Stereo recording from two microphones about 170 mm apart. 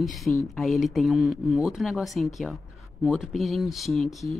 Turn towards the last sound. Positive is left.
turn(degrees=0)  # may be behind; listen again after turning